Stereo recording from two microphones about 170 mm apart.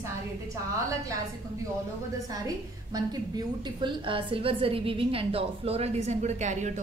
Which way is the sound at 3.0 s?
25° right (ahead or behind).